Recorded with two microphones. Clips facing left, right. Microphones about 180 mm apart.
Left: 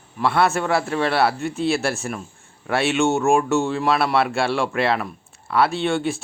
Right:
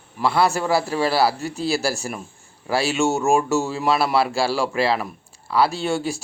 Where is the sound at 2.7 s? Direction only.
Centre (ahead or behind).